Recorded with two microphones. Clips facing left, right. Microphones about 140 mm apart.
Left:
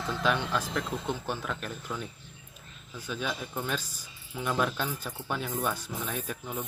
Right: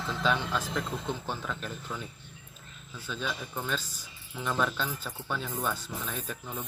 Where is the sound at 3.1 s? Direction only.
50° left (ahead or behind).